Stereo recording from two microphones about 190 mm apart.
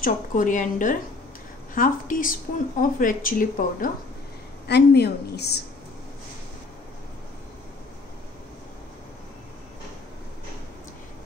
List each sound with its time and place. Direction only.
0.0 s speech: 45° left (ahead or behind)
4.6 s a woman's voice: 60° left (ahead or behind)